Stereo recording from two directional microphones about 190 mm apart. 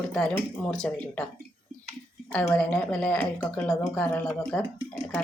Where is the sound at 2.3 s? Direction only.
5° left (ahead or behind).